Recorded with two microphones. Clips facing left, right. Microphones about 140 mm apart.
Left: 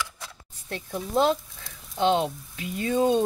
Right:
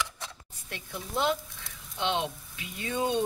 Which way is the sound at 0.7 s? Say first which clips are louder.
Left 8 dB; 35° left (ahead or behind).